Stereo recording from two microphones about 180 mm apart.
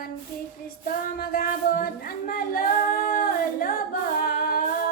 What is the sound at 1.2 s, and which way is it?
Singing, 55° left (ahead or behind).